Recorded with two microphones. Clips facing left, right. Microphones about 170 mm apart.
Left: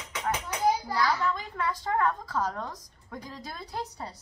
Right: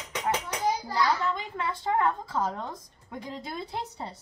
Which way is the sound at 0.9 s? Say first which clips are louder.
Right 1 dB; 20° right (ahead or behind).